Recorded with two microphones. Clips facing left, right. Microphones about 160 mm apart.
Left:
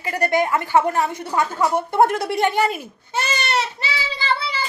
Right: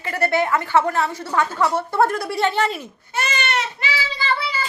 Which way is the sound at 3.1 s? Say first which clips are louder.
Left 1 dB; 30° left (ahead or behind).